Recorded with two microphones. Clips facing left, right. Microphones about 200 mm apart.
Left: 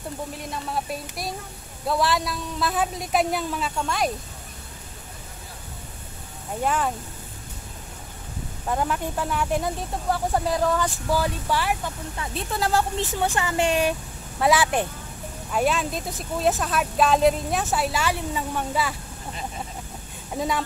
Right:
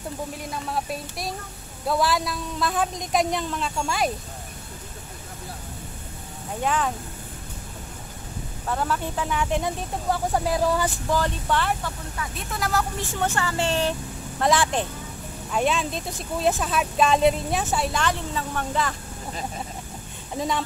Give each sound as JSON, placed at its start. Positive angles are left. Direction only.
{"t": 0.4, "sound": "speech", "side_deg": 0}
{"t": 6.6, "sound": "speech", "side_deg": 5}
{"t": 8.6, "sound": "speech", "side_deg": 15}
{"t": 11.1, "sound": "speech", "side_deg": 10}
{"t": 12.2, "sound": "speech", "side_deg": 30}
{"t": 20.3, "sound": "speech", "side_deg": 5}